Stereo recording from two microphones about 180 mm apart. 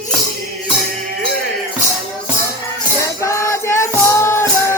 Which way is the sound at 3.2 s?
15° left (ahead or behind).